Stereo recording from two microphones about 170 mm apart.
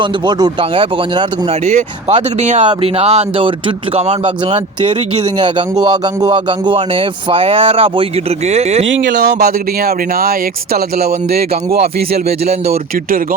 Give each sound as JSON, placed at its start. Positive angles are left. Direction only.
{"t": 0.0, "sound": "speech", "side_deg": -25}
{"t": 1.6, "sound": "speech", "side_deg": -40}
{"t": 5.7, "sound": "speech", "side_deg": -25}
{"t": 8.9, "sound": "speech", "side_deg": -90}
{"t": 9.4, "sound": "speech", "side_deg": -65}
{"t": 12.5, "sound": "speech", "side_deg": -35}